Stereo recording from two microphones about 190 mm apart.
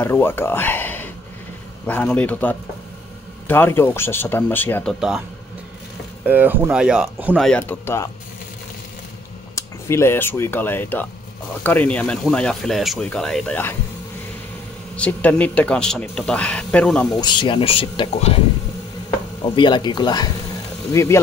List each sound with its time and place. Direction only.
0.0 s speech: 10° left (ahead or behind)
6.2 s speech: 10° right (ahead or behind)
7.4 s speech: 10° left (ahead or behind)
9.6 s speech: 15° left (ahead or behind)
15.0 s speech: 5° left (ahead or behind)
17.2 s speech: 25° left (ahead or behind)